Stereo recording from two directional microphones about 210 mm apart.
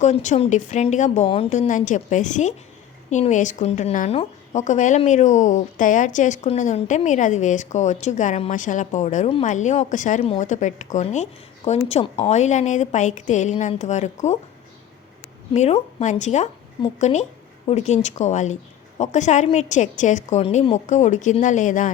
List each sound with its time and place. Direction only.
0.0 s speech: 35° left (ahead or behind)
15.5 s speech: 35° left (ahead or behind)